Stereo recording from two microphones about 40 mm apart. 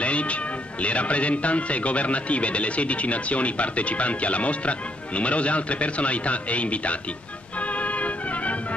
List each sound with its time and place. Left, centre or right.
0.0 s a man's voice: left
7.6 s music: left